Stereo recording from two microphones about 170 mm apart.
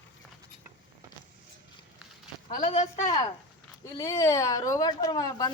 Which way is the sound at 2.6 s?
45° left (ahead or behind).